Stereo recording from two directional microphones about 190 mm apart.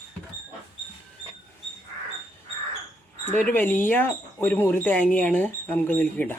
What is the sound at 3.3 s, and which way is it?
Speech, 10° left (ahead or behind).